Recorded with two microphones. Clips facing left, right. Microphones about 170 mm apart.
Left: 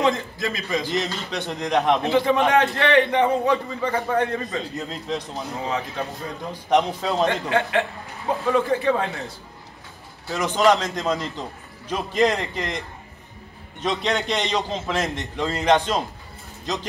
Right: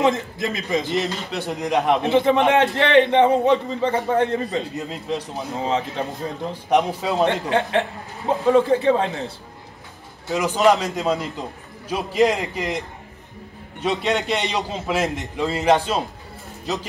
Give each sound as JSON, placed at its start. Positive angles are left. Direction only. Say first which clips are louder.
{"t": 0.0, "sound": "a man's voice", "louder": "right 2 dB", "side_deg": -20}
{"t": 0.9, "sound": "a man's voice", "louder": "right 2 dB", "side_deg": -5}
{"t": 2.0, "sound": "a man's voice", "louder": "right 2 dB", "side_deg": -25}
{"t": 4.7, "sound": "a man's voice", "louder": "right 2 dB", "side_deg": -10}
{"t": 5.6, "sound": "a man's voice", "louder": "right 4 dB", "side_deg": -25}
{"t": 6.7, "sound": "a man's voice", "louder": "right 1 dB", "side_deg": -10}
{"t": 7.2, "sound": "a man's voice", "louder": "right 2 dB", "side_deg": -30}
{"t": 10.3, "sound": "a man's voice", "louder": "right 2 dB", "side_deg": -10}